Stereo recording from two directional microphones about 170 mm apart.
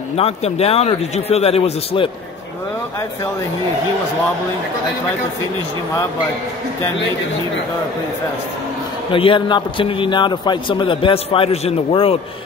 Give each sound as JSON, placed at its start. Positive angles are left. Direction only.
{"t": 0.2, "sound": "a man's voice", "side_deg": 35}
{"t": 9.1, "sound": "a man's voice", "side_deg": 30}